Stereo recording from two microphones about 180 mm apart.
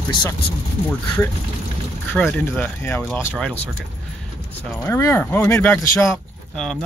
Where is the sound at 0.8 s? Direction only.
10° left (ahead or behind).